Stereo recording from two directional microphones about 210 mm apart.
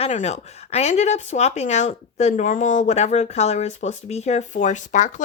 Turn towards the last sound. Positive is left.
turn(degrees=35)  # may be behind; listen again after turning